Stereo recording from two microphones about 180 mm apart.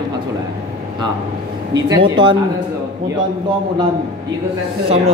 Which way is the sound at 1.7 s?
25° right (ahead or behind).